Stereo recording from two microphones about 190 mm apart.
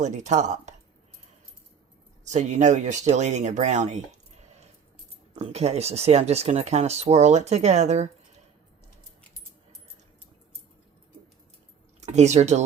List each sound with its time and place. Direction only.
0.0 s speech: 40° right (ahead or behind)
2.2 s speech: 40° right (ahead or behind)
5.3 s speech: 35° right (ahead or behind)
11.9 s speech: 35° right (ahead or behind)